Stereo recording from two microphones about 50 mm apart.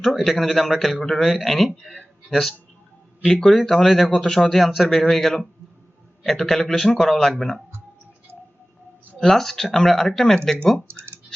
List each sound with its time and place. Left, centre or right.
0.3 s speech: centre
9.1 s speech: centre
10.8 s speech: right